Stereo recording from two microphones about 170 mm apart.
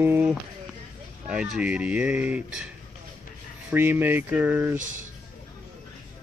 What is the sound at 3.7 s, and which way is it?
Speech, 10° right (ahead or behind).